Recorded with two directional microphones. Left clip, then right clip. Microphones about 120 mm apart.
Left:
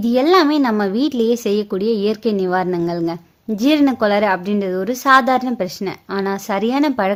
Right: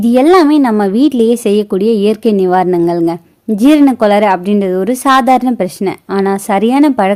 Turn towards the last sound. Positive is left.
turn(degrees=-40)  # may be behind; listen again after turning